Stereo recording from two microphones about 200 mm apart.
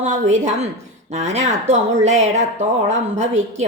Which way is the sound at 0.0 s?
35° right (ahead or behind).